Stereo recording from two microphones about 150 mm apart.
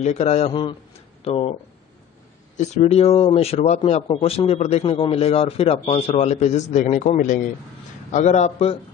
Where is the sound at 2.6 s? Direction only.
50° left (ahead or behind).